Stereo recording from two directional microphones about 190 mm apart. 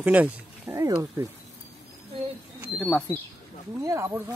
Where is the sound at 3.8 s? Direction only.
15° right (ahead or behind).